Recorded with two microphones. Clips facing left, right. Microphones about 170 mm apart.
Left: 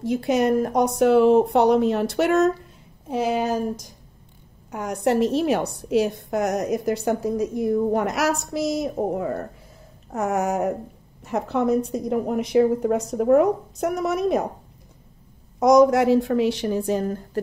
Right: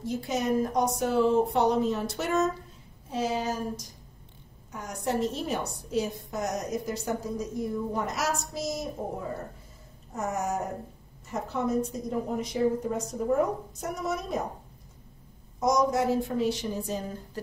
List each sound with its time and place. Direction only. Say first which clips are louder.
0.0 s a woman's voice: left 9 dB; 70° left (ahead or behind)
15.6 s a woman's voice: left 9 dB; 75° left (ahead or behind); by 17.4 s 60° left (ahead or behind)